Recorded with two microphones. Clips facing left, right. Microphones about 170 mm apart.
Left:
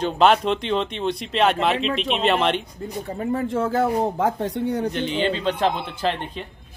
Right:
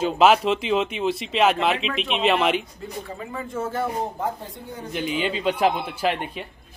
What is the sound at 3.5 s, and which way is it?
Speech, 90° left.